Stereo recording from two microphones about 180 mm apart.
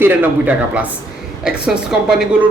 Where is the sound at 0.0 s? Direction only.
10° right (ahead or behind).